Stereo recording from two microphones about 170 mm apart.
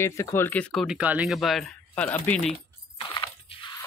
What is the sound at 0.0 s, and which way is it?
Speech, 15° left (ahead or behind).